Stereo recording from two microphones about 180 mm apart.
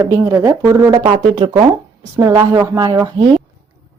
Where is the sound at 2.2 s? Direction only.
15° right (ahead or behind).